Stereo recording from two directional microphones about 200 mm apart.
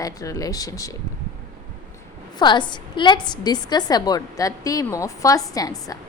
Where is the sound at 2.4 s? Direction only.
20° left (ahead or behind).